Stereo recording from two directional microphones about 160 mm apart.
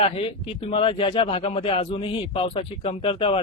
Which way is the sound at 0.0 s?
35° left (ahead or behind).